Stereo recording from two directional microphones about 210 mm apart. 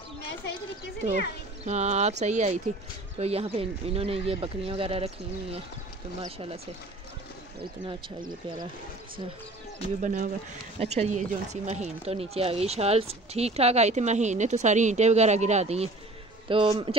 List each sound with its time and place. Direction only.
1.7 s speech: 35° right (ahead or behind)
8.3 s speech: 20° right (ahead or behind)
10.0 s speech: 35° right (ahead or behind)